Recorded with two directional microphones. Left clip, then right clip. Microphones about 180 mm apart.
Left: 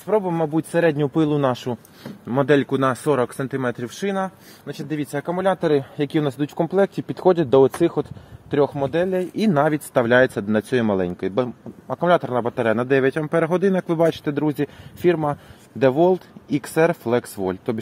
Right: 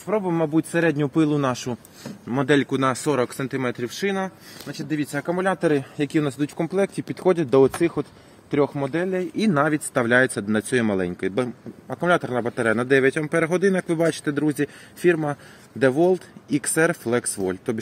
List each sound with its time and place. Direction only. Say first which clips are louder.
0.0 s speech: left 2 dB; 45° left (ahead or behind)